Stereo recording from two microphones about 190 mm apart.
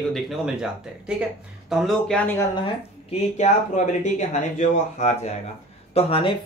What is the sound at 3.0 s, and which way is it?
Speech, 40° left (ahead or behind).